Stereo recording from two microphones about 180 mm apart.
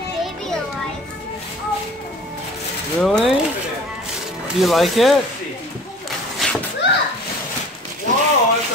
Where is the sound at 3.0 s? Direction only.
Centre (ahead or behind).